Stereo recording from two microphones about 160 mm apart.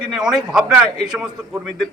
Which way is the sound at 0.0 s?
5° right (ahead or behind).